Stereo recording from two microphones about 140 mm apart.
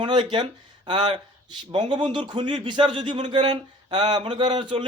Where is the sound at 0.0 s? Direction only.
35° right (ahead or behind).